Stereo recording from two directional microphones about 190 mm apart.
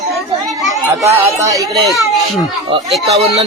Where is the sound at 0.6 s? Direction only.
15° right (ahead or behind).